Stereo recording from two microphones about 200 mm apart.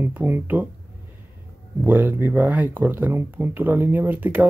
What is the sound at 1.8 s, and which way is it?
Speech, 10° right (ahead or behind).